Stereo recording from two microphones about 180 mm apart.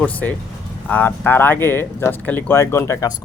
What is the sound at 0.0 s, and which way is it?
A man's voice, 10° left (ahead or behind).